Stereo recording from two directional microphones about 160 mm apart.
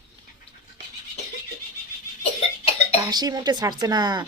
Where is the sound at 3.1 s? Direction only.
25° right (ahead or behind).